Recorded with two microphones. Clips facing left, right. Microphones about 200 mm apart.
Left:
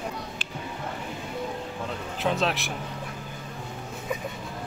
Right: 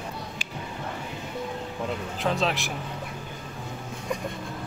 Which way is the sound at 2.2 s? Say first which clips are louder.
Even; centre (ahead or behind).